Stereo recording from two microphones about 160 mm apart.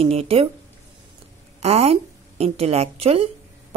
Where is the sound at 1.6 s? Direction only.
40° right (ahead or behind).